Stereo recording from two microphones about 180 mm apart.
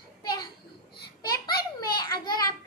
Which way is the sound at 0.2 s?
20° left (ahead or behind).